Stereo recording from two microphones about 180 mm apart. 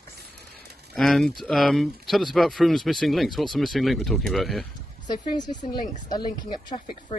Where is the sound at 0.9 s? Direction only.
Centre (ahead or behind).